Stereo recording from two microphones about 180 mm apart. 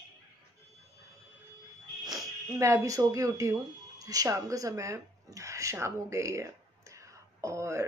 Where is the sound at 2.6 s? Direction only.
15° right (ahead or behind).